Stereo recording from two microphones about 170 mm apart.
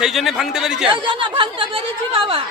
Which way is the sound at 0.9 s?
30° right (ahead or behind).